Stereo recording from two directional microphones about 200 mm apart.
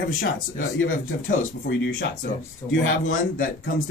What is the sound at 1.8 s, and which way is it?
Speech, 65° left (ahead or behind).